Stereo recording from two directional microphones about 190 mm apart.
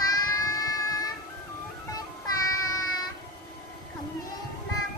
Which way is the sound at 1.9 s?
20° left (ahead or behind).